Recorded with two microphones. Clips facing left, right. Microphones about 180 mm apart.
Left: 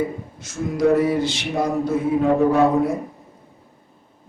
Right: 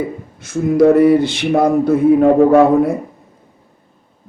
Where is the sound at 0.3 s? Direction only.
60° right (ahead or behind).